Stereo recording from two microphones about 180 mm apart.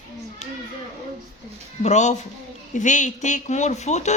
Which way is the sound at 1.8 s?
40° left (ahead or behind).